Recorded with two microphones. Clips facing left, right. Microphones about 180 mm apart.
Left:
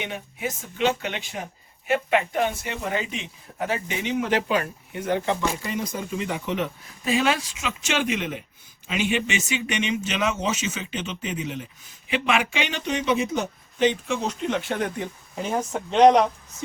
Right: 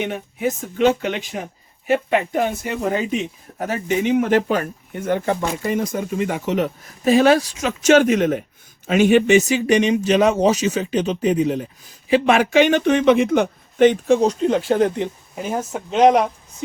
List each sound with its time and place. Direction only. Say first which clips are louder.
0.0 s speech: right 8 dB; 50° right (ahead or behind)
14.1 s speech: right 10 dB; 35° right (ahead or behind)
15.4 s speech: right 2 dB; 5° right (ahead or behind)